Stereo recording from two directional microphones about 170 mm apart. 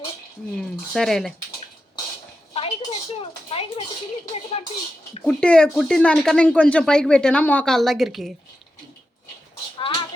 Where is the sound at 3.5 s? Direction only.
35° left (ahead or behind).